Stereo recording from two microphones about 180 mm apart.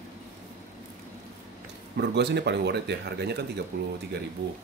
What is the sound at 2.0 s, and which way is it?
Speech, 70° right (ahead or behind).